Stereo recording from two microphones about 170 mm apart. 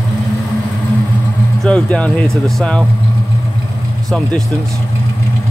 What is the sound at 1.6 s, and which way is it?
Speech, 5° left (ahead or behind).